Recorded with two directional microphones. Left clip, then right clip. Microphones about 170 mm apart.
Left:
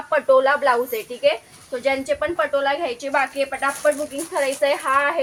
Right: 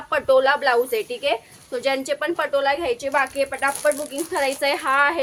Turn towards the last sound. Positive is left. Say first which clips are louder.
# even
turn(degrees=-45)  # may be behind; listen again after turning